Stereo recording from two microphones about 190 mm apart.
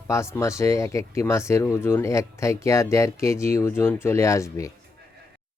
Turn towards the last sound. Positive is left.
turn(degrees=15)  # may be behind; listen again after turning